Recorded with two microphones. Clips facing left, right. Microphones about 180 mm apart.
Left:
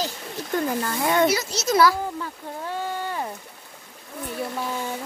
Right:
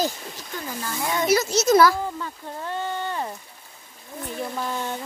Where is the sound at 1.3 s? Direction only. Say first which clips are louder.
Right 4 dB; 45° right (ahead or behind).